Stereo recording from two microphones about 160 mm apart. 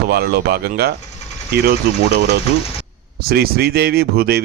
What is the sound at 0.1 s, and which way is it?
Speech, 80° right.